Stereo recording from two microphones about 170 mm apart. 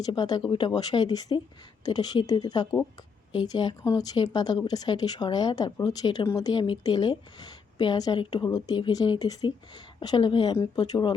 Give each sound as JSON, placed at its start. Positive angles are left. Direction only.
{"t": 0.0, "sound": "speech", "side_deg": 25}